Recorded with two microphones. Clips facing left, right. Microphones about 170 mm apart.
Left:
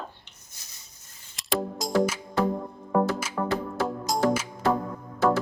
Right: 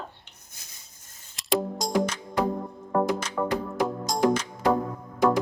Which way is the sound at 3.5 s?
15° right (ahead or behind).